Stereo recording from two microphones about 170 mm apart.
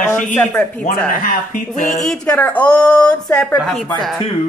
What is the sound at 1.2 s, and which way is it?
Speech, 55° left (ahead or behind).